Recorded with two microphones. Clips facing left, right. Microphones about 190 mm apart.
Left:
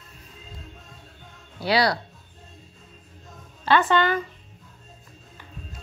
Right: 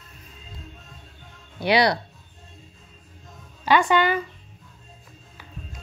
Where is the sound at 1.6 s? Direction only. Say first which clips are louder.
Right 2 dB; 20° right (ahead or behind).